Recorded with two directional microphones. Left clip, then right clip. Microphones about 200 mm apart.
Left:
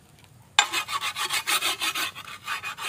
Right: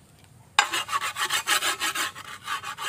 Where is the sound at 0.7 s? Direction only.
10° right (ahead or behind).